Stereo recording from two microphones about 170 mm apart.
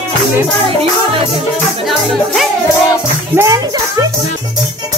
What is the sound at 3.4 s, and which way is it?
Music, 20° right (ahead or behind).